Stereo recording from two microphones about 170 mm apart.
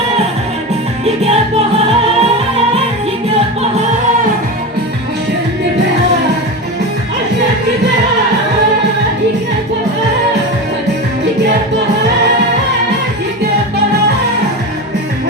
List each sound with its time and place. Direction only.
1.0 s music: 35° right (ahead or behind)